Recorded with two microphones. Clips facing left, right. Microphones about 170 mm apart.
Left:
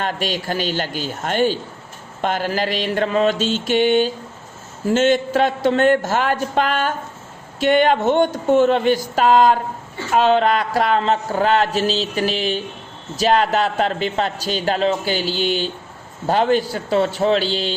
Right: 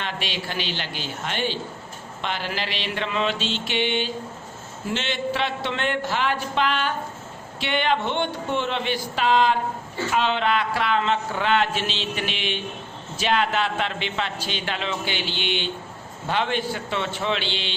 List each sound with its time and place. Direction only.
0.0 s speech: 45° left (ahead or behind)